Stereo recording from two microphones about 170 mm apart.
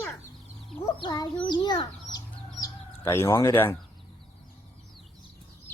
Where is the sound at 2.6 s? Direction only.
15° left (ahead or behind).